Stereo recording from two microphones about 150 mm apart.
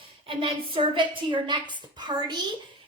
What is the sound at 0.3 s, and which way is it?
A woman's voice, 35° right (ahead or behind).